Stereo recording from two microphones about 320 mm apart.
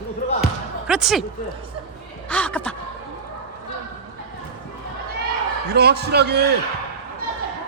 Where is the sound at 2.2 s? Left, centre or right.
Centre.